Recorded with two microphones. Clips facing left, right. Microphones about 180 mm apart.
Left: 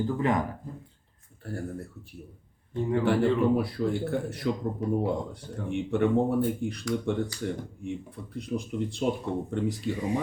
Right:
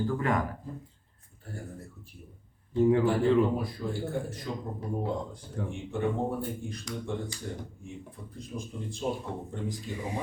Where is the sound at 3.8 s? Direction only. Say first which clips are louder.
Left 7 dB; 65° left (ahead or behind).